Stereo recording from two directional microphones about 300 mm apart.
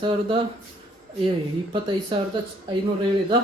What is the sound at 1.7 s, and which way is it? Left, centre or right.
Speech, centre.